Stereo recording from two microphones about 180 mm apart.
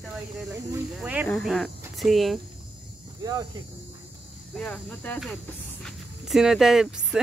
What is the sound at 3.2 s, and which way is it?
Speech, 25° right (ahead or behind).